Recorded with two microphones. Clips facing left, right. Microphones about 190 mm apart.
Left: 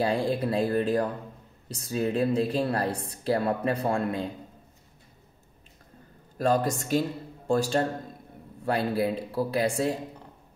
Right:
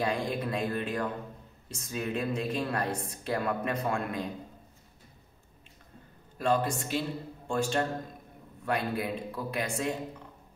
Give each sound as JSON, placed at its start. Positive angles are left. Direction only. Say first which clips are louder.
{"t": 0.0, "sound": "speech", "louder": "left 5 dB", "side_deg": 30}
{"t": 6.3, "sound": "a man's voice", "louder": "left 3 dB", "side_deg": 40}